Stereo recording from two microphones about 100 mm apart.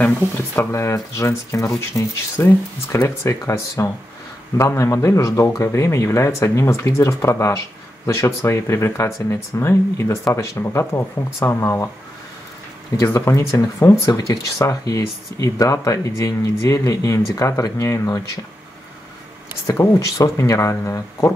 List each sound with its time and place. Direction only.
0.6 s speech: 30° left (ahead or behind)
13.0 s speech: 30° left (ahead or behind)
19.7 s speech: 30° left (ahead or behind)